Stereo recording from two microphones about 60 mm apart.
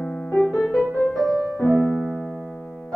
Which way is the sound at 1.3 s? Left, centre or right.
Left.